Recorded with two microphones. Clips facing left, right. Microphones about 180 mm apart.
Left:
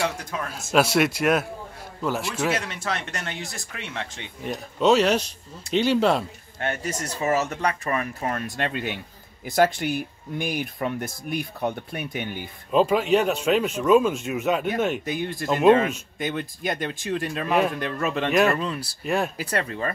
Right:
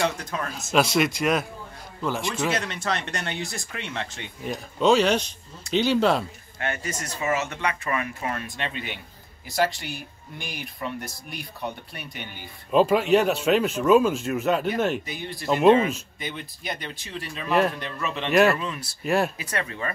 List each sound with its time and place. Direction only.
0.0 s a man's voice: 10° left (ahead or behind)
6.6 s speech: 35° left (ahead or behind); by 12.3 s 50° left (ahead or behind)
12.7 s speech: centre (ahead or behind)
15.0 s speech: 50° left (ahead or behind)
15.4 s speech: centre (ahead or behind)
16.2 s speech: 50° left (ahead or behind)
18.3 s speech: centre (ahead or behind)
18.6 s speech: 35° left (ahead or behind)
19.0 s speech: 5° right (ahead or behind)
19.5 s speech: 35° left (ahead or behind)